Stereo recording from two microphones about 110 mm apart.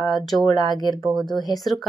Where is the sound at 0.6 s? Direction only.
40° left (ahead or behind).